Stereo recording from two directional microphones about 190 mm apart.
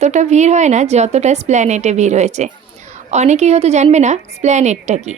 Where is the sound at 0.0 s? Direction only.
40° right (ahead or behind).